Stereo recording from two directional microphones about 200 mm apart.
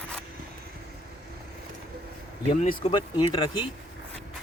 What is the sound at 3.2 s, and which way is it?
Speech, 25° left (ahead or behind).